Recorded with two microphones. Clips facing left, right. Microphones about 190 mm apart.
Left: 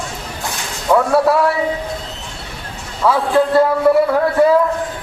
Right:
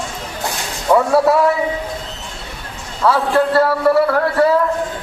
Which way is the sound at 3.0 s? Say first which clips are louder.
Left 1 dB; 15° left (ahead or behind).